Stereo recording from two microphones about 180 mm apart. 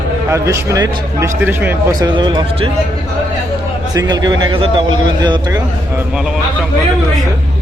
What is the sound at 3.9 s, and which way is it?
A man's voice, 20° right (ahead or behind).